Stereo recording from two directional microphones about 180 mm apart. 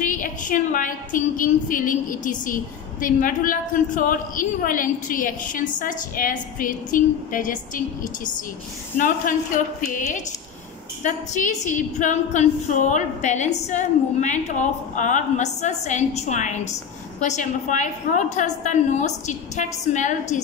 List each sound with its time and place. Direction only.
0.0 s a woman's voice: 45° left (ahead or behind)